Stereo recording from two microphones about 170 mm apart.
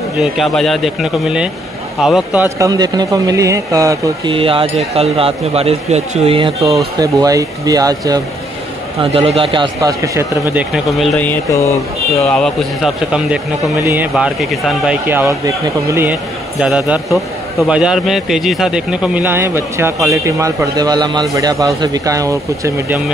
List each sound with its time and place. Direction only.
0.2 s speech: centre (ahead or behind)
2.4 s speech: 20° right (ahead or behind)
4.3 s speech: 30° right (ahead or behind)
7.0 s speech: 20° right (ahead or behind)
9.0 s speech: 35° right (ahead or behind)
9.8 s speech: 20° right (ahead or behind); by 15.0 s 5° right (ahead or behind)
15.0 s a man's voice: 15° right (ahead or behind)